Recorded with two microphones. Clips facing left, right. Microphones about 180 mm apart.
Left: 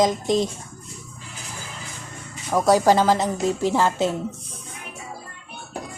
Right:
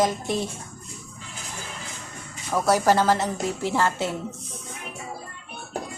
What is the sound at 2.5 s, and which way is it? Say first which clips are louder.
Speech: left 3 dB; 15° left (ahead or behind).